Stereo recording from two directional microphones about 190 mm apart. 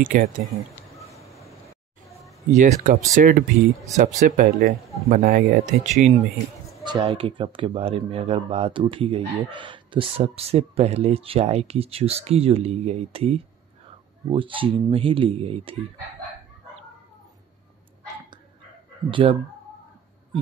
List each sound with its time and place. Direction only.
0.0 s speech: 45° right (ahead or behind)
0.8 s a sound: centre (ahead or behind)
2.5 s speech: 40° right (ahead or behind)
6.8 s a man's voice: 25° right (ahead or behind)
19.0 s a man's voice: 25° right (ahead or behind)